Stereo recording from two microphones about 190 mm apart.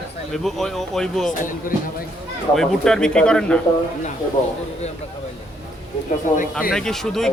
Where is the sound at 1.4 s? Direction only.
45° left (ahead or behind).